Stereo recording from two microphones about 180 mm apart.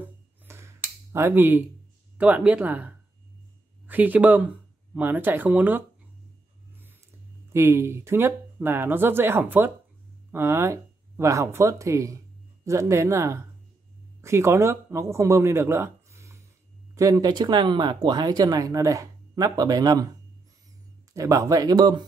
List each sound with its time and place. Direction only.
0.0 s a sound: 15° right (ahead or behind)
2.1 s speech: 10° right (ahead or behind)
7.5 s speech: 15° right (ahead or behind)
21.1 s speech: 20° right (ahead or behind)